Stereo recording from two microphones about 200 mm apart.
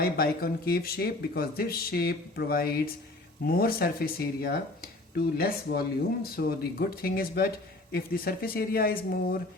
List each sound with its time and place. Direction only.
0.0 s speech: 50° left (ahead or behind)